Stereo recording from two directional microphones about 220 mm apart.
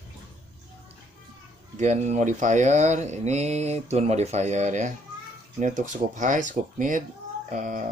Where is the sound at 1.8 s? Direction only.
30° right (ahead or behind).